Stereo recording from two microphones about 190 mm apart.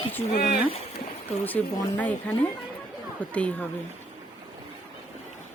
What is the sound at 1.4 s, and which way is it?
A woman's voice, 10° left (ahead or behind).